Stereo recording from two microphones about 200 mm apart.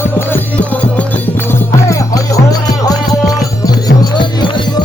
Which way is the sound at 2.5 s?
20° left (ahead or behind).